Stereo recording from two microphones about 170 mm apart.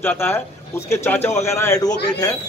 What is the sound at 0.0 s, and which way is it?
Speech, 10° left (ahead or behind).